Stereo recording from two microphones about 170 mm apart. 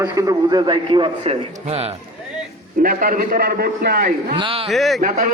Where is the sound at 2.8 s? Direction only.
55° right (ahead or behind).